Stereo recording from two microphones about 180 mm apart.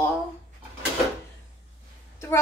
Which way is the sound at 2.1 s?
15° left (ahead or behind).